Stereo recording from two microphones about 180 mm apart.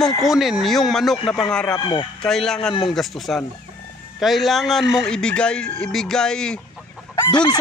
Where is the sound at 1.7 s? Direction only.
30° left (ahead or behind).